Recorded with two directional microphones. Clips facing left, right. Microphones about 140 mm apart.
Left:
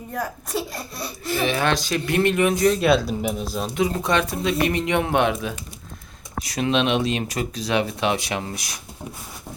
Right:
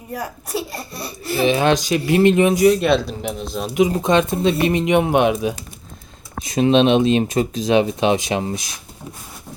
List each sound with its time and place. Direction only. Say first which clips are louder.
0.1 s speech: right 1 dB; 5° right (ahead or behind)
1.4 s speech: right 6 dB; 20° right (ahead or behind)
2.6 s speech: right 3 dB; centre (ahead or behind)
3.8 s speech: right 6 dB; 15° right (ahead or behind)